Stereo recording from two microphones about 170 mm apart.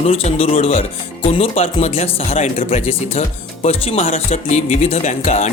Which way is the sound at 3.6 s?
35° left (ahead or behind).